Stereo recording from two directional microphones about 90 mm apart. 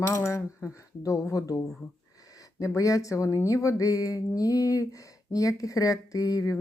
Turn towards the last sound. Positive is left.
turn(degrees=40)  # may be behind; listen again after turning